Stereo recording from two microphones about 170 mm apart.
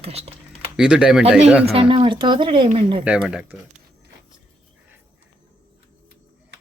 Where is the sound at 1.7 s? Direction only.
35° right (ahead or behind).